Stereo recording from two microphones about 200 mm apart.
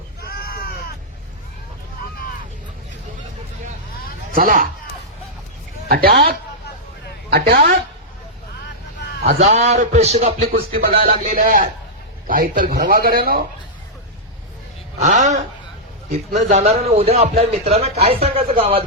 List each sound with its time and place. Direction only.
0.2 s a sound: 50° left (ahead or behind)
4.3 s a man's voice: 45° right (ahead or behind)
5.9 s a woman's voice: 50° right (ahead or behind)
9.4 s speech: 30° right (ahead or behind)
10.5 s speech: 45° right (ahead or behind)
10.9 s speech: 30° right (ahead or behind); by 13.4 s 50° right (ahead or behind)
15.0 s speech: 35° right (ahead or behind)